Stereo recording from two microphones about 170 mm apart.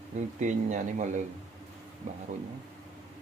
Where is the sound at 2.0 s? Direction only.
45° right (ahead or behind).